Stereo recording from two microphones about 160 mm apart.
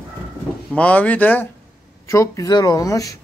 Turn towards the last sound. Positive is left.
turn(degrees=20)  # may be behind; listen again after turning